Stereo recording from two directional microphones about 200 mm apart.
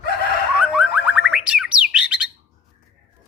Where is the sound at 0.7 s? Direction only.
5° right (ahead or behind).